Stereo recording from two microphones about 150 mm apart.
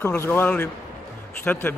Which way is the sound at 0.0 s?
15° left (ahead or behind).